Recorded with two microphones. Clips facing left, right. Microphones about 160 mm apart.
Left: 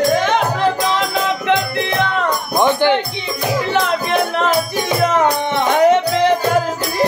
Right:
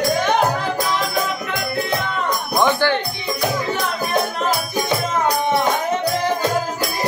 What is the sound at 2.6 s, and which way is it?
Music, 20° left (ahead or behind).